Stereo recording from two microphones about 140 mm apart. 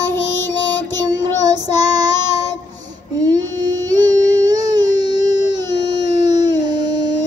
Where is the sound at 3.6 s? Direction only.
30° right (ahead or behind).